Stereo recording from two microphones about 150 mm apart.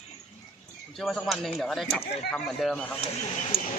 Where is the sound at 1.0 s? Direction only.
Centre (ahead or behind).